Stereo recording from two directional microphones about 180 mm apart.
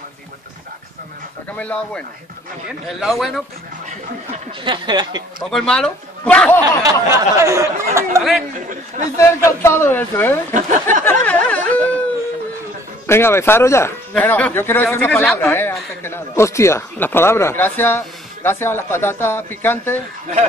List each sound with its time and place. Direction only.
1.6 s speech: 10° left (ahead or behind)
4.6 s speech: 25° right (ahead or behind)
5.5 s speech: 5° left (ahead or behind)
6.8 s speech: 15° right (ahead or behind)
8.2 s speech: centre (ahead or behind)
9.2 s speech: 15° left (ahead or behind)
10.5 s speech: 45° right (ahead or behind)
11.1 s snicker: 10° left (ahead or behind)
13.0 s speech: 15° left (ahead or behind)